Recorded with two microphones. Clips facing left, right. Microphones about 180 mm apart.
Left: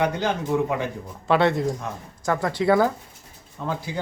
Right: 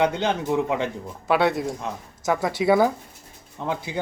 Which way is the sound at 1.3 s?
5° right (ahead or behind).